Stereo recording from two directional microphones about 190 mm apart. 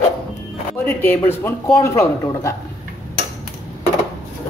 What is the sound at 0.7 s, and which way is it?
Speech, 10° left (ahead or behind).